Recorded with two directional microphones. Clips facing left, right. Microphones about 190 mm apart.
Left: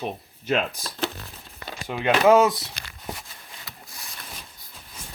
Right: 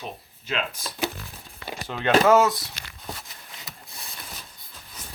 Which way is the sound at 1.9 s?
10° left (ahead or behind).